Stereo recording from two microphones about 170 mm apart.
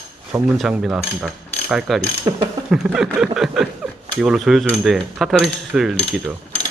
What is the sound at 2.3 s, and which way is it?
Mechanisms, 25° right (ahead or behind).